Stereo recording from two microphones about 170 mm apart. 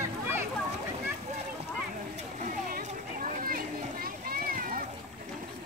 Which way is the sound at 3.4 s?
60° right (ahead or behind).